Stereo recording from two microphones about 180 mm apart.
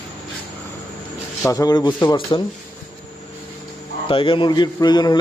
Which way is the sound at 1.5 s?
20° left (ahead or behind).